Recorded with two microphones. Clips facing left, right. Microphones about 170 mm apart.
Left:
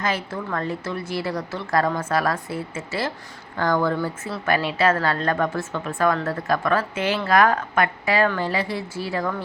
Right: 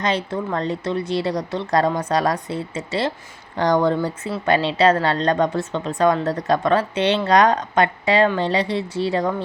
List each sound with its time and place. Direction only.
0.0 s speech: 20° right (ahead or behind)